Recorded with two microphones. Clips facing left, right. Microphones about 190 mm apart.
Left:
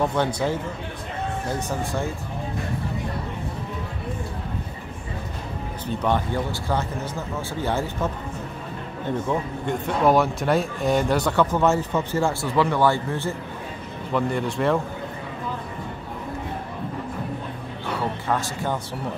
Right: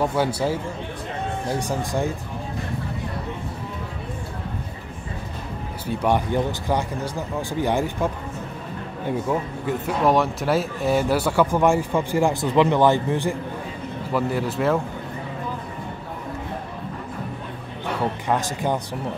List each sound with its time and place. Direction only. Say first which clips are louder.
0.0 s speech: right 1 dB; 5° right (ahead or behind)
5.9 s speech: right 2 dB; 15° right (ahead or behind)
14.1 s speech: even; 5° right (ahead or behind)
18.3 s speech: right 2 dB; 15° right (ahead or behind)